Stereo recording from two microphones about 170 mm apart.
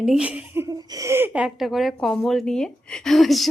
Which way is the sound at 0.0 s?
5° right (ahead or behind).